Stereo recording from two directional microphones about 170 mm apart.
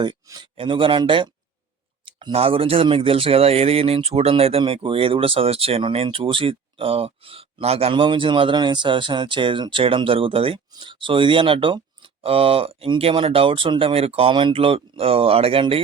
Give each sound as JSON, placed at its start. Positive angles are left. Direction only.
{"t": 0.0, "sound": "speech", "side_deg": -25}